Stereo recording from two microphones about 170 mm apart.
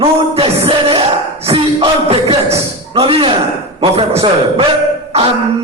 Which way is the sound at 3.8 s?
35° right (ahead or behind).